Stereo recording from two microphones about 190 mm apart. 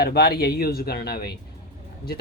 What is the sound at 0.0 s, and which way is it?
Speech, 55° left (ahead or behind).